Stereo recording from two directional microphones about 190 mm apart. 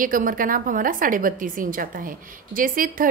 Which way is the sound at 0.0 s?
45° right (ahead or behind).